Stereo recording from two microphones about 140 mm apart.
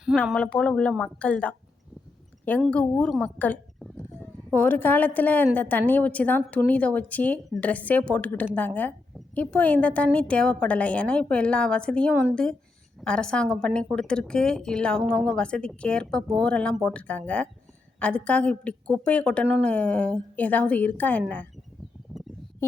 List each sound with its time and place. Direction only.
0.3 s a woman's voice: 5° left (ahead or behind)
2.6 s a woman's voice: 10° left (ahead or behind)
3.8 s a sound: 10° left (ahead or behind)
5.5 s a woman's voice: 10° left (ahead or behind)